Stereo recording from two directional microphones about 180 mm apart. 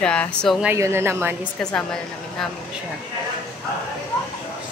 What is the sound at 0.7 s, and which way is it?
Speech, 15° right (ahead or behind).